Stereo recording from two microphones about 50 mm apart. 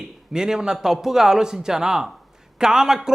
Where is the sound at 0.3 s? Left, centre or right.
Centre.